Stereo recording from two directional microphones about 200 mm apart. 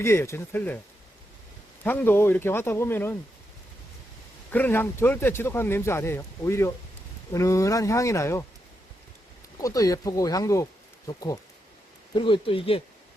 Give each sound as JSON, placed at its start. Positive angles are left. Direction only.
{"t": 0.0, "sound": "speech", "side_deg": 15}
{"t": 1.8, "sound": "speech", "side_deg": 10}
{"t": 4.5, "sound": "speech", "side_deg": 10}
{"t": 9.6, "sound": "speech", "side_deg": 15}